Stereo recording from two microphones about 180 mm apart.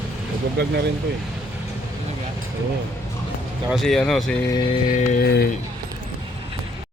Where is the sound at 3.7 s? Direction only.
Centre (ahead or behind).